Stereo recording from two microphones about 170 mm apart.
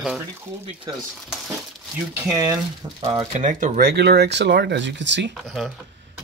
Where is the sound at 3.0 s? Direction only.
35° right (ahead or behind).